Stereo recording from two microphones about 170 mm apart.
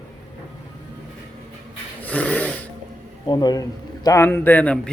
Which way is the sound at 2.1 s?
10° left (ahead or behind).